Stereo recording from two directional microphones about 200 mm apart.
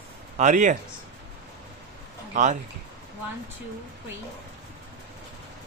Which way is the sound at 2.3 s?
35° right (ahead or behind).